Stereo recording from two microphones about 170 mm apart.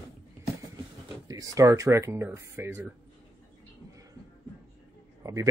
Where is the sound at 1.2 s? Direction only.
20° right (ahead or behind).